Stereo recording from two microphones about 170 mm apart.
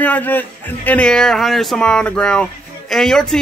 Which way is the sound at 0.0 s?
10° left (ahead or behind).